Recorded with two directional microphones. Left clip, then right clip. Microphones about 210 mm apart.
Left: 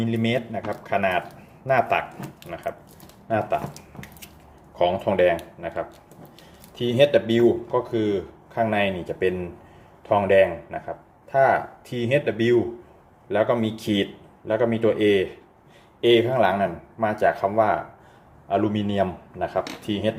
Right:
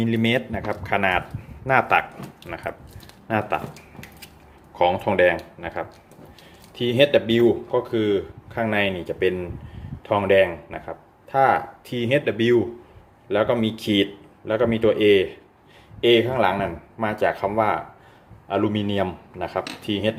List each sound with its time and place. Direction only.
0.0 s speech: 20° right (ahead or behind)
3.2 s speech: 15° right (ahead or behind)
4.7 s speech: 10° right (ahead or behind)